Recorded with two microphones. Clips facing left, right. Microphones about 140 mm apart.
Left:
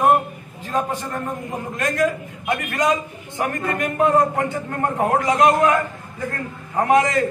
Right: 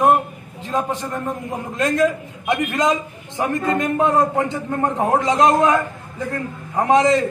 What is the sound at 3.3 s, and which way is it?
A man's voice, 20° right (ahead or behind).